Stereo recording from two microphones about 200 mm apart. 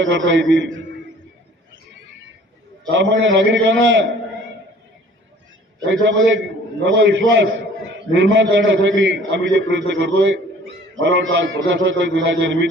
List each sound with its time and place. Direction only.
0.0 s a man's voice: 65° right (ahead or behind)
2.9 s a man's voice: 65° right (ahead or behind)
5.8 s a man's voice: 65° right (ahead or behind)